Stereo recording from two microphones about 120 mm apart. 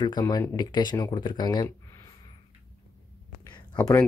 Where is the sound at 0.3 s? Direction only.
35° left (ahead or behind).